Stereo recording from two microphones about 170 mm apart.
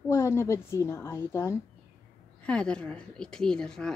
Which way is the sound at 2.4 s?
5° left (ahead or behind).